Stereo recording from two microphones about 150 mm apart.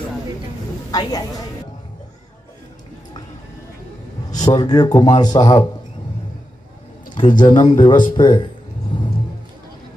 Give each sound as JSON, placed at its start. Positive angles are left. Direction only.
{"t": 0.9, "sound": "speech", "side_deg": 25}
{"t": 4.5, "sound": "speech", "side_deg": 30}
{"t": 7.2, "sound": "speech", "side_deg": 30}